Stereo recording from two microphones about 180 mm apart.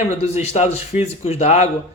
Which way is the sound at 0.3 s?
40° left (ahead or behind).